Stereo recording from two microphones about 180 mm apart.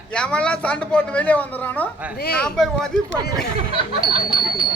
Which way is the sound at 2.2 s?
60° left (ahead or behind).